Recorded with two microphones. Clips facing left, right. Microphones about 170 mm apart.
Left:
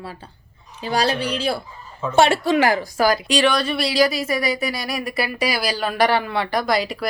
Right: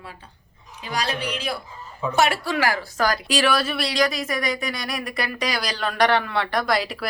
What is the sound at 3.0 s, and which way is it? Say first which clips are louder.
Speech: left 4 dB; centre (ahead or behind).